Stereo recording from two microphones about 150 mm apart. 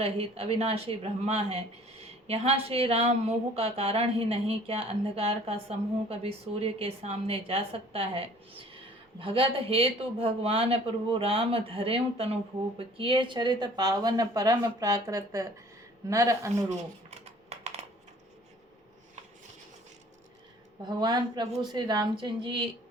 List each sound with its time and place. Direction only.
0.0 s a woman's voice: 40° right (ahead or behind); by 16.6 s 20° right (ahead or behind)
17.8 s coin: 50° right (ahead or behind)
20.8 s a man's voice: 25° right (ahead or behind)